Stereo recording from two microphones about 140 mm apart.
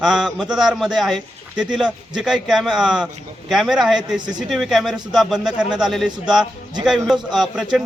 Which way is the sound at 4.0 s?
30° right (ahead or behind).